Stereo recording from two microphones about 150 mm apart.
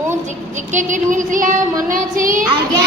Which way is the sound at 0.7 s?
55° right (ahead or behind).